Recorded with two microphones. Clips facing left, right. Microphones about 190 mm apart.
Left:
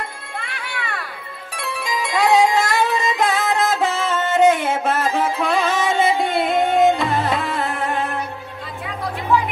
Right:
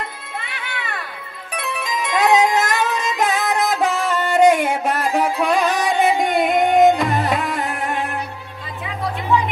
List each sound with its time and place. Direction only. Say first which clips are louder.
1.5 s music: right 1 dB; 20° right (ahead or behind)